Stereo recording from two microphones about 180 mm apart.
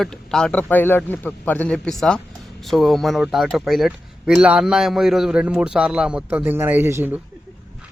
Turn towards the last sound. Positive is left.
turn(degrees=-10)  # may be behind; listen again after turning